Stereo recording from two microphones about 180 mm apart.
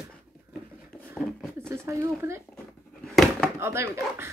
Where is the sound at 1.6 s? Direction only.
15° right (ahead or behind).